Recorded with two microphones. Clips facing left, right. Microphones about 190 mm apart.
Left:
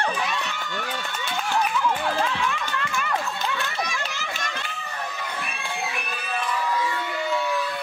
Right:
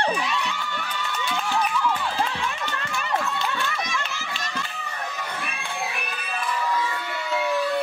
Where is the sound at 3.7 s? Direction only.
35° left (ahead or behind).